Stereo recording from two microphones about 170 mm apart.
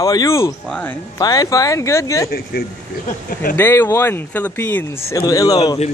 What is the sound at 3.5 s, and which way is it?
Speech, 15° left (ahead or behind).